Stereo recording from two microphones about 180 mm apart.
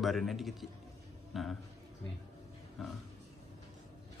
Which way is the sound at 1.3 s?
Centre (ahead or behind).